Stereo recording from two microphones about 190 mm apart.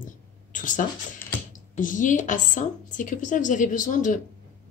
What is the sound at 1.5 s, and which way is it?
Speech, 45° left (ahead or behind).